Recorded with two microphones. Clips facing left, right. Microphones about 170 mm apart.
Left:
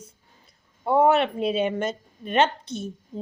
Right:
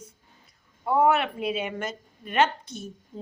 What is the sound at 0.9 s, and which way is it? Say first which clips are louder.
A woman's voice: left 3 dB; 25° left (ahead or behind).